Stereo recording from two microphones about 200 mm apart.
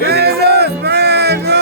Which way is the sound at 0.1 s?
55° right (ahead or behind).